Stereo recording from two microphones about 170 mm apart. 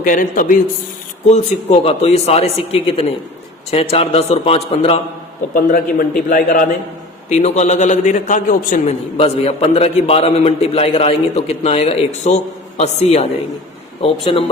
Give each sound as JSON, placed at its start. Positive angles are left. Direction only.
{"t": 0.0, "sound": "a man's voice", "side_deg": 50}
{"t": 1.3, "sound": "a man's voice", "side_deg": 35}
{"t": 5.5, "sound": "a man's voice", "side_deg": 55}
{"t": 7.3, "sound": "a man's voice", "side_deg": 40}